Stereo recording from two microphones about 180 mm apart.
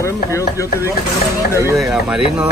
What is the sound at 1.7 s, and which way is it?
Speech, centre (ahead or behind).